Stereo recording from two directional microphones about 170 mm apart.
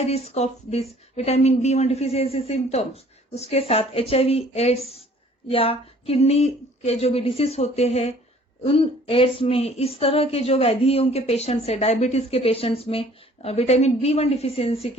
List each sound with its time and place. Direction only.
0.0 s a woman's voice: 35° left (ahead or behind)